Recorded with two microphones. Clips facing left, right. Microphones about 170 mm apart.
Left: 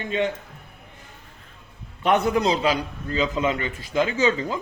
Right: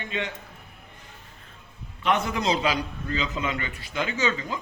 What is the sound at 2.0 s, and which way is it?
Speech, 45° left (ahead or behind).